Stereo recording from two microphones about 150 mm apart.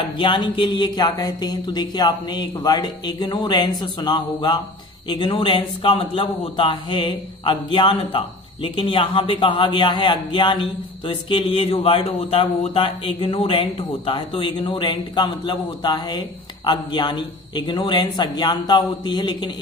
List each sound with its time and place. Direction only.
0.2 s a man's voice: 35° left (ahead or behind)